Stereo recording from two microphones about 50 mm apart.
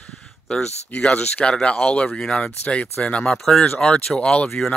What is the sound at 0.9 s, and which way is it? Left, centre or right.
Speech, left.